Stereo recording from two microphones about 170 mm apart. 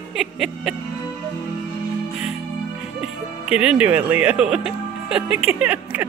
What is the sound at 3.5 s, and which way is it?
Speech, 5° right (ahead or behind).